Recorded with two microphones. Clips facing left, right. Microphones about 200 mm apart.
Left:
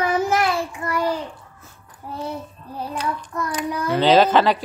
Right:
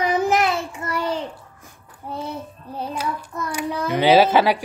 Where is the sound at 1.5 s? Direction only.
15° right (ahead or behind).